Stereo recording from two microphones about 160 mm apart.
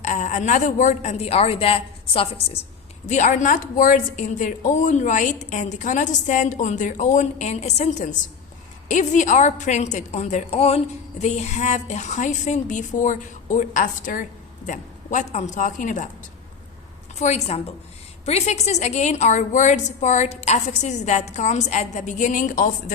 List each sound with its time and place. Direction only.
0.0 s a woman's voice: 50° left (ahead or behind)
3.1 s a woman's voice: 50° left (ahead or behind)
17.2 s a woman's voice: 45° left (ahead or behind)